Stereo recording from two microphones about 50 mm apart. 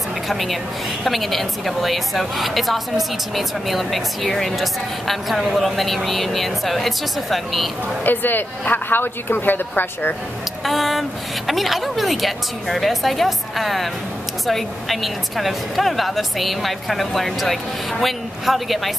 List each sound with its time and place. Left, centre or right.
0.3 s a woman's voice: centre
8.0 s a woman's voice: left
10.6 s a woman's voice: centre